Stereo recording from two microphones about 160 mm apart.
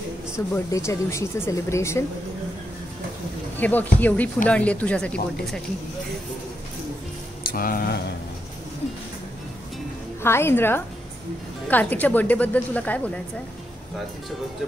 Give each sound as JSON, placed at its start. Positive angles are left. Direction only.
{"t": 0.5, "sound": "speech", "side_deg": 20}
{"t": 3.5, "sound": "speech", "side_deg": 10}
{"t": 7.5, "sound": "speech", "side_deg": 65}
{"t": 10.2, "sound": "speech", "side_deg": 15}